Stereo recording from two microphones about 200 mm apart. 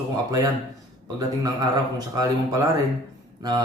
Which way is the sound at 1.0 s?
20° right (ahead or behind).